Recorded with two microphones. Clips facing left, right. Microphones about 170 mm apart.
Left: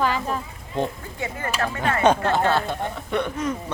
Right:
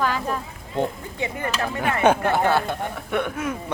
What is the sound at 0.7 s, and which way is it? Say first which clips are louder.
Speech: right 1 dB; 20° right (ahead or behind).